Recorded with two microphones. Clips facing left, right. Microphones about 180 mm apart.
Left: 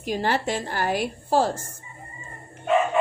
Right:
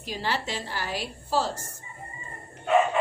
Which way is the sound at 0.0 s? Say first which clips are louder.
Left 6 dB; 50° left (ahead or behind).